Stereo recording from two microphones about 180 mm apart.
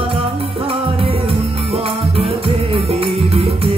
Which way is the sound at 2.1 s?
35° right (ahead or behind).